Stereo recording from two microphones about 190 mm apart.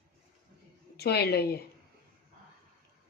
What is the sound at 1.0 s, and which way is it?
Speech, 60° left (ahead or behind).